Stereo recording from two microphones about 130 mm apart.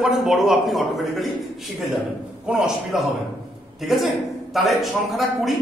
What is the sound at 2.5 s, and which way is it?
Speech, 5° right (ahead or behind).